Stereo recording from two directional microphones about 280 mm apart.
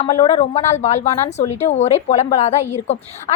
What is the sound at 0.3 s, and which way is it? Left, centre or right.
A woman's voice, left.